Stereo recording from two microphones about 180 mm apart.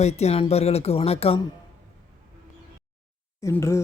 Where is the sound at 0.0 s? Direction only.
35° left (ahead or behind).